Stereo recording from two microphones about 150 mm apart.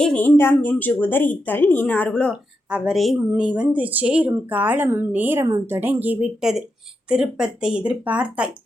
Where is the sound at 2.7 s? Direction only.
5° right (ahead or behind).